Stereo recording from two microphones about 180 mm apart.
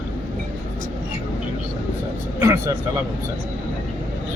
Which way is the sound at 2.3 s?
15° right (ahead or behind).